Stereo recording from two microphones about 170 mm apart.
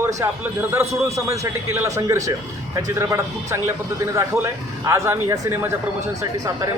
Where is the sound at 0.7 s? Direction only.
15° right (ahead or behind).